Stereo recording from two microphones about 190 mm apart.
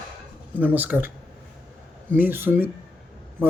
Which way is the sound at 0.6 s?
10° right (ahead or behind).